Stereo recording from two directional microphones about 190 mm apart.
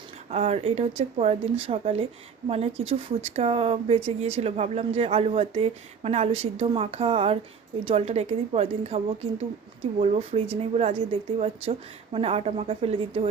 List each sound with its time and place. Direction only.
0.3 s a woman's voice: 30° right (ahead or behind)